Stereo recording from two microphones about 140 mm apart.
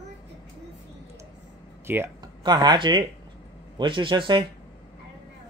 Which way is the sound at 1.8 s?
15° right (ahead or behind).